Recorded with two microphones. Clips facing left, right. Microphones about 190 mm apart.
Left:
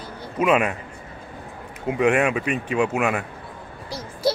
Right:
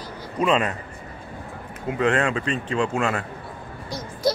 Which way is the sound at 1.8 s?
15° left (ahead or behind).